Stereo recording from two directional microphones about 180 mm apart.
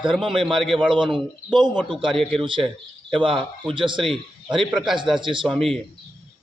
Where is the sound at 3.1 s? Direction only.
30° right (ahead or behind).